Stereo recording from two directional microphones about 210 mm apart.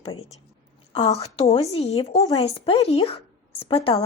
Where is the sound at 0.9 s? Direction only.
20° left (ahead or behind).